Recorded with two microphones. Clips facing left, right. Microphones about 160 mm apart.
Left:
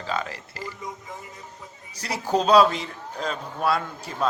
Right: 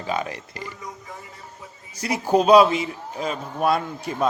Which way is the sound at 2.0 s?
10° right (ahead or behind).